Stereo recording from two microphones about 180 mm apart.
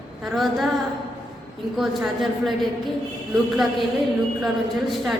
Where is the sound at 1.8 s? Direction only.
Centre (ahead or behind).